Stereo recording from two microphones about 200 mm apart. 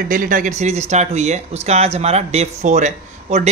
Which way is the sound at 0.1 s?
45° right (ahead or behind).